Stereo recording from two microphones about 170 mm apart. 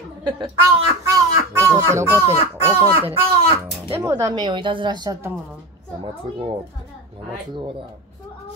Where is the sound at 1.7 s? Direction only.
15° right (ahead or behind).